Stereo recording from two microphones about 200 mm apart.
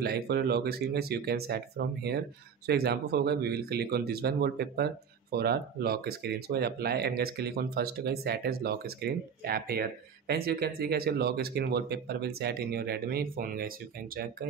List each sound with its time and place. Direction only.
0.0 s speech: 50° right (ahead or behind)